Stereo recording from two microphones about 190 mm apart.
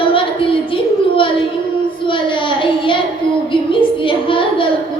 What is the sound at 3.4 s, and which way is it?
Child singing, 25° left (ahead or behind).